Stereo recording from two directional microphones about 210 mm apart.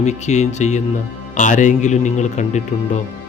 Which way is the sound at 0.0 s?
35° left (ahead or behind).